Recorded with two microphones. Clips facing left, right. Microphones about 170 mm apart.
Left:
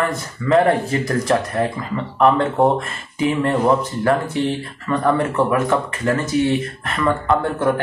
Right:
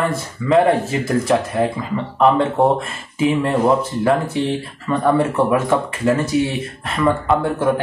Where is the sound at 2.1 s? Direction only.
Centre (ahead or behind).